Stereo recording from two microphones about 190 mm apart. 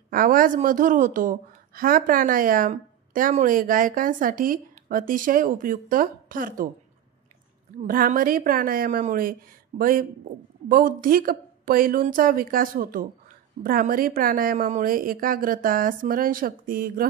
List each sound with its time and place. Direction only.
0.1 s a woman's voice: 45° right (ahead or behind)
7.8 s a woman's voice: 45° right (ahead or behind)